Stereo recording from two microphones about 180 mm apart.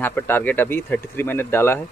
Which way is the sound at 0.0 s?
10° left (ahead or behind).